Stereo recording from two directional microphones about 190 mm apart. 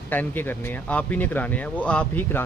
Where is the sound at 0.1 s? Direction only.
10° left (ahead or behind).